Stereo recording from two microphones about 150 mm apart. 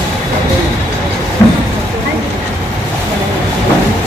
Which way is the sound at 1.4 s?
20° left (ahead or behind).